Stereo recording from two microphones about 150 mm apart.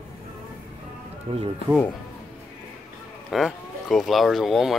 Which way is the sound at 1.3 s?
40° right (ahead or behind).